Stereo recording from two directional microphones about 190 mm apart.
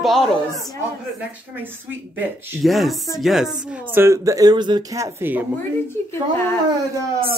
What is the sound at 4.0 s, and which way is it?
Speech, 15° right (ahead or behind).